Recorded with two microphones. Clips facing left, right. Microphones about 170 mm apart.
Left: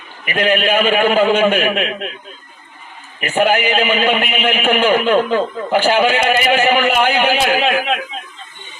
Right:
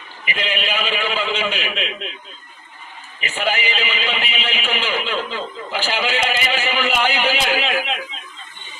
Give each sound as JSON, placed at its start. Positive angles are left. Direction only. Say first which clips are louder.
{"t": 0.3, "sound": "a man's voice", "louder": "left 9 dB", "side_deg": 50}
{"t": 3.2, "sound": "a man's voice", "louder": "left 8 dB", "side_deg": 50}